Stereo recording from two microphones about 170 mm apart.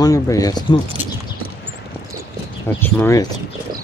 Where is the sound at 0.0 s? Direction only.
20° left (ahead or behind).